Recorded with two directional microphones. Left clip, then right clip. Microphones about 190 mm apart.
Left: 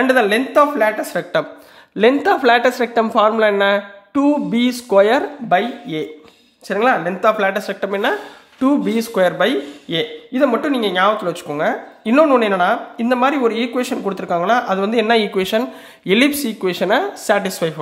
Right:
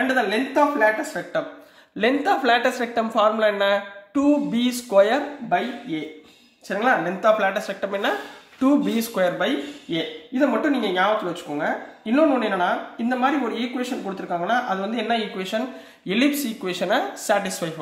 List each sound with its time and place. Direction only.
0.0 s speech: 45° left (ahead or behind)
2.0 s a woman's voice: 30° left (ahead or behind)
5.5 s speech: 50° left (ahead or behind)
6.7 s speech: 30° left (ahead or behind)
9.4 s a woman's voice: 50° left (ahead or behind); by 17.7 s 35° left (ahead or behind)